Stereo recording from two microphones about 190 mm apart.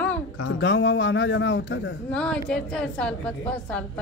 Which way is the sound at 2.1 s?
5° left (ahead or behind).